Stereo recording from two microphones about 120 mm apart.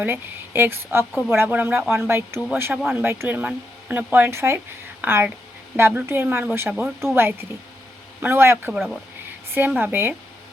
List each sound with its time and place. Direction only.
0.0 s a woman's voice: 20° right (ahead or behind)
8.7 s speech: centre (ahead or behind)
9.6 s a woman's voice: 15° right (ahead or behind)